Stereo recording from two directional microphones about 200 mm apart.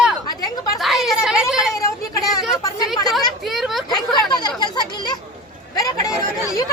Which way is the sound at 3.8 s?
20° left (ahead or behind).